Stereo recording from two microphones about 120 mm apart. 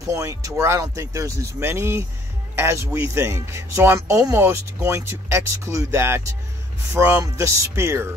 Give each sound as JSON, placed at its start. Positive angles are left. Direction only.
{"t": 0.0, "sound": "speech", "side_deg": -25}